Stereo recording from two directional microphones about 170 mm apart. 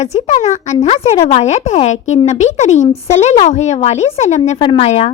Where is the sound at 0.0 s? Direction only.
40° left (ahead or behind).